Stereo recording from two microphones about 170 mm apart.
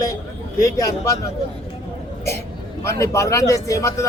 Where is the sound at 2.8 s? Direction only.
15° left (ahead or behind).